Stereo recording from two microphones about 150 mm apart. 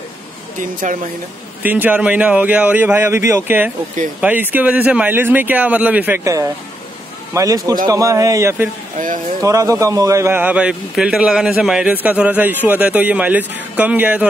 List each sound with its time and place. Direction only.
0.6 s speech: 60° right (ahead or behind)
1.6 s a man's voice: 10° right (ahead or behind)